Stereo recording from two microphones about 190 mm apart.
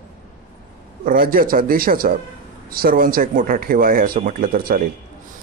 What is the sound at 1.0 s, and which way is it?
Speech, 50° right (ahead or behind).